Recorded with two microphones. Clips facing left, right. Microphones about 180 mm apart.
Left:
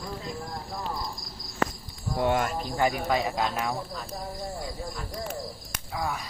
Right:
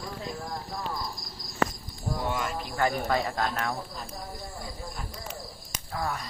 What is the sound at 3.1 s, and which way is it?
Speech, 10° left (ahead or behind).